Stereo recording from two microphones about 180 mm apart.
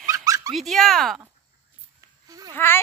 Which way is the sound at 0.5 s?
Centre (ahead or behind).